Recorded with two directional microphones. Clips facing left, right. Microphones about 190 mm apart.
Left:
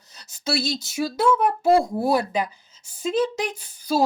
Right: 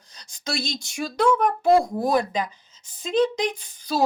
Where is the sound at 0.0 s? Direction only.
5° left (ahead or behind).